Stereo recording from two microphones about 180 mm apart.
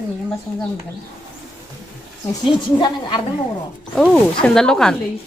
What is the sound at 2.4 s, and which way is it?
Speech, 25° left (ahead or behind).